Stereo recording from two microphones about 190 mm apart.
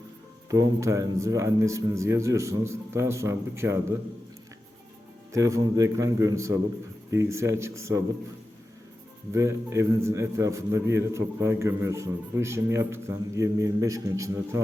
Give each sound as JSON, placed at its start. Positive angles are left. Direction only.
{"t": 0.5, "sound": "a man's voice", "side_deg": -15}
{"t": 5.3, "sound": "a man's voice", "side_deg": -15}
{"t": 9.3, "sound": "a man's voice", "side_deg": -15}